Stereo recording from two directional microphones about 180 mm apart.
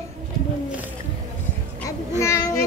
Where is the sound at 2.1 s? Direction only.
15° left (ahead or behind).